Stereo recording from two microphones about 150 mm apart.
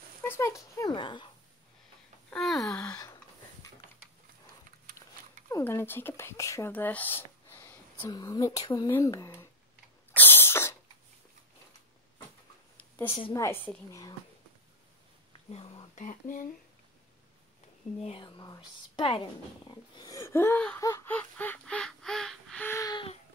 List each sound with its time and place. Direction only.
0.3 s speech: 20° left (ahead or behind)
2.3 s a sound: centre (ahead or behind)
5.5 s speech: 15° left (ahead or behind)
8.1 s speech: 25° left (ahead or behind)
10.1 s cough: 15° left (ahead or behind)
12.9 s a sound: 15° left (ahead or behind)
13.3 s speech: 15° left (ahead or behind)
15.5 s speech: 40° left (ahead or behind)
16.0 s speech: 60° left (ahead or behind)
18.0 s speech: 35° left (ahead or behind); by 20.8 s 10° left (ahead or behind)
20.8 s a sound: 15° left (ahead or behind)
22.8 s a sound: 25° left (ahead or behind)